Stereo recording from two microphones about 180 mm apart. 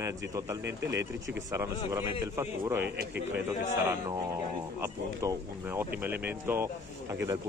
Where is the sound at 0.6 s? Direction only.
75° right (ahead or behind).